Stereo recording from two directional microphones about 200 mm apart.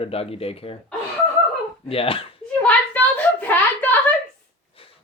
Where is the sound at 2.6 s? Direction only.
10° left (ahead or behind).